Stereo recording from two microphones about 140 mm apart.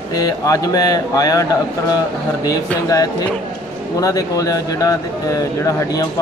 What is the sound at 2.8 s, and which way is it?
Speech, 25° left (ahead or behind).